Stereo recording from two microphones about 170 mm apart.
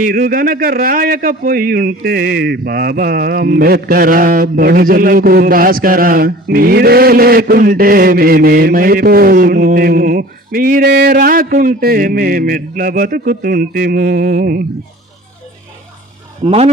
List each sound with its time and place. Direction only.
0.0 s a man's voice: 60° right (ahead or behind)
16.4 s speech: 35° right (ahead or behind)